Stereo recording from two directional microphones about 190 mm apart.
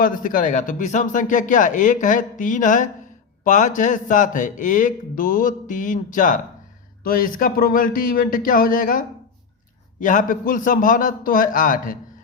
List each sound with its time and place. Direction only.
0.0 s a man's voice: 45° left (ahead or behind)